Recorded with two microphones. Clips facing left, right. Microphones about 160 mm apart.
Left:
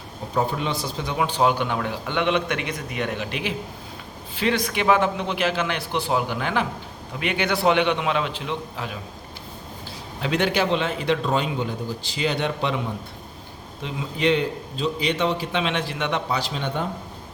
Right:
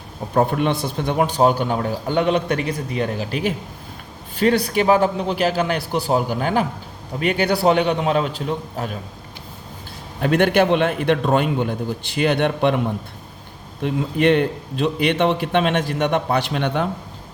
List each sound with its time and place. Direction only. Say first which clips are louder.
0.3 s a man's voice: right 6 dB; 55° right (ahead or behind)
10.2 s a man's voice: right 6 dB; 55° right (ahead or behind); by 16.9 s 70° right (ahead or behind)